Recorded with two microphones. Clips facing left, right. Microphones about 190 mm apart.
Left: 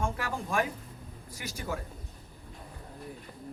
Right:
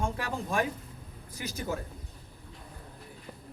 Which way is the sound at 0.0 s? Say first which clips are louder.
Even; 20° right (ahead or behind).